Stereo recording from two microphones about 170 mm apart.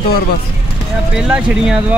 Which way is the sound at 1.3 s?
5° right (ahead or behind).